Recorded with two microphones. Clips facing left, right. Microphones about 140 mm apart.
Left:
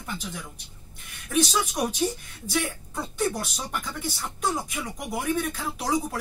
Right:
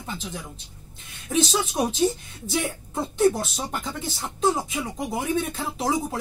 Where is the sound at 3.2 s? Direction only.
25° right (ahead or behind).